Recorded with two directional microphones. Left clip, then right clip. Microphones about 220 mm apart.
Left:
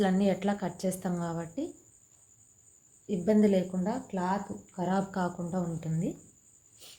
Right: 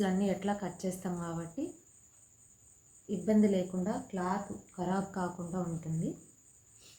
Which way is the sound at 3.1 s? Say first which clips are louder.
Left 4 dB; 40° left (ahead or behind).